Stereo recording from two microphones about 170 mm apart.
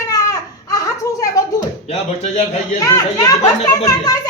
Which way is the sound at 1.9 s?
40° left (ahead or behind).